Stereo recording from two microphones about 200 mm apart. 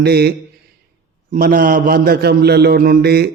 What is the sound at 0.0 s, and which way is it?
A man's voice, 55° right (ahead or behind).